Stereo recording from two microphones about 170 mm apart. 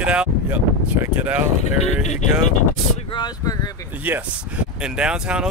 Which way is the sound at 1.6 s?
40° left (ahead or behind).